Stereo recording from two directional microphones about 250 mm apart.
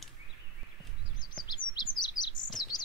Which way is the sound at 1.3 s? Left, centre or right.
Centre.